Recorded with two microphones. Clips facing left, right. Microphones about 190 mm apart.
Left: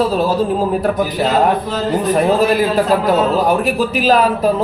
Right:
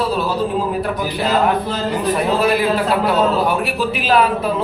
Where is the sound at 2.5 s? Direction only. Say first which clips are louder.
Left 3 dB; 40° left (ahead or behind).